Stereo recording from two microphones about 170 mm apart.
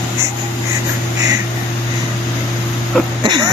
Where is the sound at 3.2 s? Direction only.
25° right (ahead or behind).